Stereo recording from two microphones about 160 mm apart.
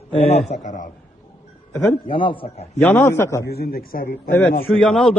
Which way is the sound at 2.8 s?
15° left (ahead or behind).